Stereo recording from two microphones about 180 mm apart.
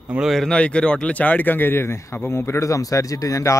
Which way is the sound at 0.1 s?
Centre (ahead or behind).